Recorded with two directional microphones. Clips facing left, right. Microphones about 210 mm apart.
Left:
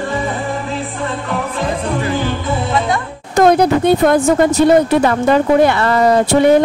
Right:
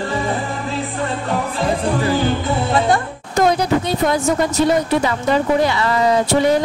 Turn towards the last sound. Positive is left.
turn(degrees=55)  # may be behind; listen again after turning